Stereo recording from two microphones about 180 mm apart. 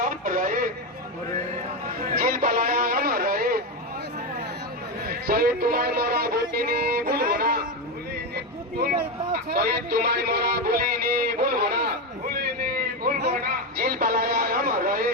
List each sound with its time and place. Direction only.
0.0 s radio: 50° right (ahead or behind)
2.1 s music: 55° right (ahead or behind)
5.0 s music: 55° right (ahead or behind)
8.8 s a sound: 55° right (ahead or behind)
13.2 s music: 55° right (ahead or behind)